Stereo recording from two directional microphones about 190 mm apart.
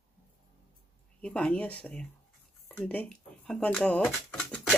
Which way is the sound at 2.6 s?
5° left (ahead or behind).